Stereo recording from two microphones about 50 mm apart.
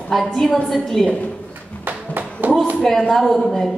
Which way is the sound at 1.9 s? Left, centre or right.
Right.